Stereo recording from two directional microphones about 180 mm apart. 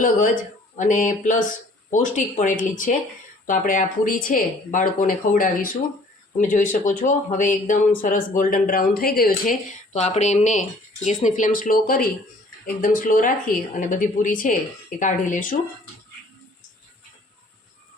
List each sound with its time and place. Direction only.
0.0 s speech: 45° left (ahead or behind)